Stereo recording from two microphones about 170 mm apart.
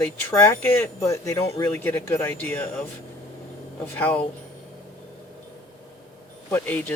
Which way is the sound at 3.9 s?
10° left (ahead or behind).